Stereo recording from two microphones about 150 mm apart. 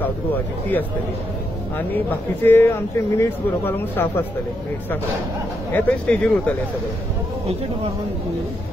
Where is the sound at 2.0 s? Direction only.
15° left (ahead or behind).